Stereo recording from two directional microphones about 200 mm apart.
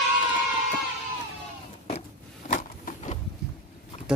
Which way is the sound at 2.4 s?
40° left (ahead or behind).